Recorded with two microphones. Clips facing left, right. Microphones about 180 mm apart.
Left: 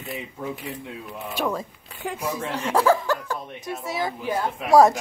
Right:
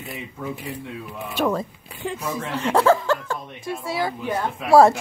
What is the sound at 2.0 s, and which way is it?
Speech, 10° left (ahead or behind).